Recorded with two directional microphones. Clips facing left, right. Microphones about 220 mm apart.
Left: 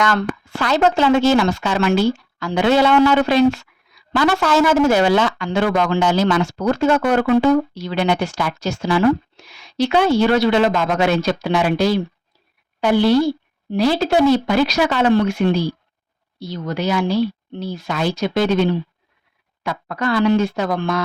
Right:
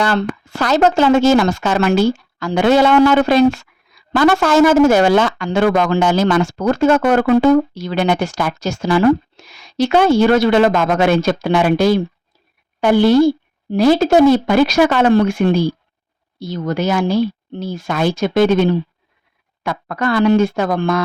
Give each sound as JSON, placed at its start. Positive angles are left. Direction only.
{"t": 0.0, "sound": "speech", "side_deg": -35}